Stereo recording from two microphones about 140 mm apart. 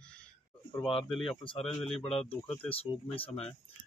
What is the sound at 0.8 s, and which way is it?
A man's voice, centre (ahead or behind).